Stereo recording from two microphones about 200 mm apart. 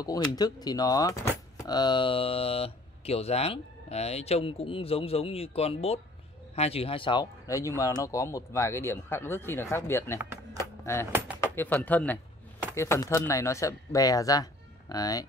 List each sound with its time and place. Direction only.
0.0 s speech: 20° left (ahead or behind)
10.1 s speech: 15° right (ahead or behind)
10.6 s speech: 15° left (ahead or behind)
11.1 s speech: 10° right (ahead or behind)
11.4 s speech: 10° left (ahead or behind)